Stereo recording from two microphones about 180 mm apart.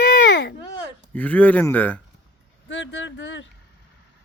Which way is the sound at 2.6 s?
80° left.